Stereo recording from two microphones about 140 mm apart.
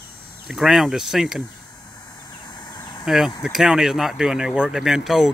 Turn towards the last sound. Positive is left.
turn(degrees=0)  # may be behind; listen again after turning